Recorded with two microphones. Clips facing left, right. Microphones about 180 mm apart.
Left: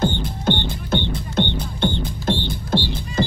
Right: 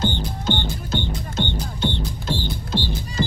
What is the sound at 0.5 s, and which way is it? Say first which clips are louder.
Music: left 4 dB; 55° left (ahead or behind).